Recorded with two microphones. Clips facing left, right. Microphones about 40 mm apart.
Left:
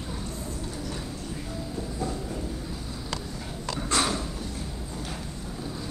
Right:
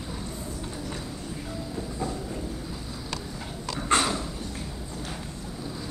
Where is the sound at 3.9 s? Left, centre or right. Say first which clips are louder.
Right 3 dB; right.